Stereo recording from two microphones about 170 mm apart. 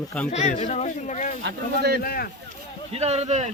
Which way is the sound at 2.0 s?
65° left (ahead or behind).